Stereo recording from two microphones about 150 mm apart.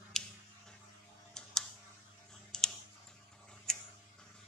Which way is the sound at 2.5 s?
5° left (ahead or behind).